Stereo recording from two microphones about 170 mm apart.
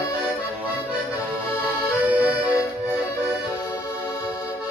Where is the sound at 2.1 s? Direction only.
10° right (ahead or behind).